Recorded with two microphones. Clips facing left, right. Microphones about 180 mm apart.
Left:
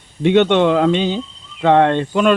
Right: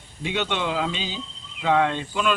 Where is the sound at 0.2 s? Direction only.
60° left (ahead or behind).